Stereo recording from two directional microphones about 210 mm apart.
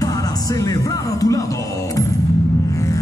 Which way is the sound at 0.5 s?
15° left (ahead or behind).